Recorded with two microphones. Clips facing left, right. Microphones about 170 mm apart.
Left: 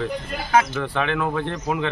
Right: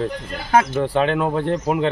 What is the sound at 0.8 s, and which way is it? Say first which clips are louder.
A man's voice: right 5 dB; 35° right (ahead or behind).